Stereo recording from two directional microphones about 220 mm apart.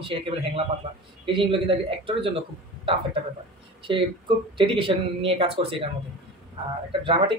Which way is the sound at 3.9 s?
20° right (ahead or behind).